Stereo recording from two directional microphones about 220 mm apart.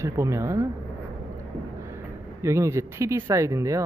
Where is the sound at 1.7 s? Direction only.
15° right (ahead or behind).